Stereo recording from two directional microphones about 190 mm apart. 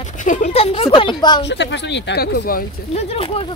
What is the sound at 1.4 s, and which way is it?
Speech, 65° left (ahead or behind).